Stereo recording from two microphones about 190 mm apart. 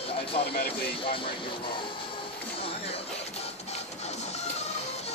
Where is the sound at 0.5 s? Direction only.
55° left (ahead or behind).